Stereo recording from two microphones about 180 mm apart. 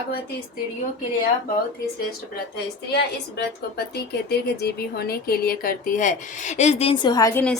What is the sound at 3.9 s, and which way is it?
Speech, 65° left (ahead or behind).